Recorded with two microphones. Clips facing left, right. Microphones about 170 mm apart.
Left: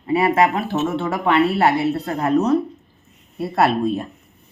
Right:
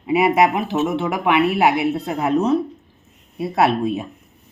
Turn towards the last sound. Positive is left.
turn(degrees=0)  # may be behind; listen again after turning